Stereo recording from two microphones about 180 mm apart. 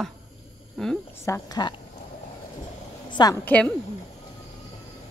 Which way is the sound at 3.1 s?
20° left (ahead or behind).